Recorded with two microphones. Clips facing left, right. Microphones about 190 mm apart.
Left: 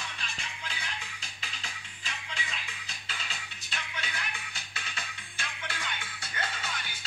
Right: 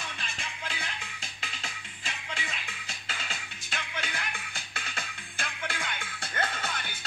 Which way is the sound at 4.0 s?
50° right (ahead or behind).